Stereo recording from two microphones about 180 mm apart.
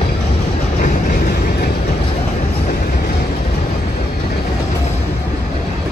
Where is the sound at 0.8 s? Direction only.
50° left (ahead or behind).